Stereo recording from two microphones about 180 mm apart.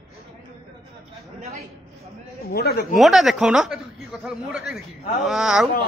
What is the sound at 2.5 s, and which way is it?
Speech, 60° left (ahead or behind).